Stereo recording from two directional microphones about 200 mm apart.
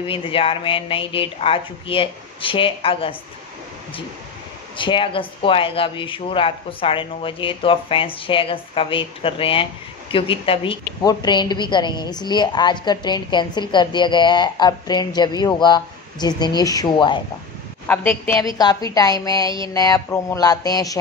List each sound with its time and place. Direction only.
0.0 s a woman's voice: 25° left (ahead or behind)
4.7 s a woman's voice: 25° left (ahead or behind)
17.8 s speech: 10° left (ahead or behind)